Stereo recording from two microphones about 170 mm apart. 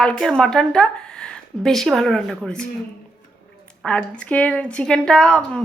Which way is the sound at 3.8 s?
5° left (ahead or behind).